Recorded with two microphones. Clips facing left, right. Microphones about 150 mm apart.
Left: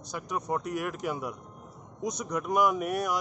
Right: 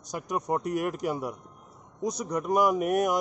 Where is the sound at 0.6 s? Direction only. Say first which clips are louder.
Right 3 dB; 45° right (ahead or behind).